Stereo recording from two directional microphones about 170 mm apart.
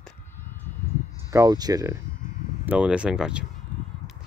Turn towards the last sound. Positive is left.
turn(degrees=-5)  # may be behind; listen again after turning